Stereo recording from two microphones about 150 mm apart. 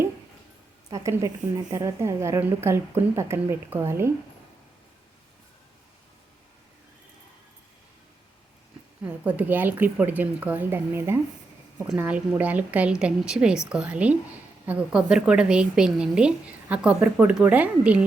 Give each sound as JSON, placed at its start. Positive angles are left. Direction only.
{"t": 0.9, "sound": "a woman's voice", "side_deg": -20}
{"t": 9.2, "sound": "a woman's voice", "side_deg": -10}